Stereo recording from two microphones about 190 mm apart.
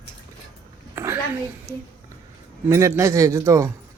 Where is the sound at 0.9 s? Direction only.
15° right (ahead or behind).